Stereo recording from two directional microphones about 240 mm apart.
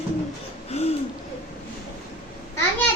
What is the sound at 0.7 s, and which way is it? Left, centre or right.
Hoot, left.